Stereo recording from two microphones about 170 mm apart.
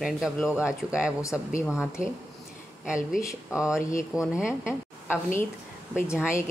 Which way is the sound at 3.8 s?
20° left (ahead or behind).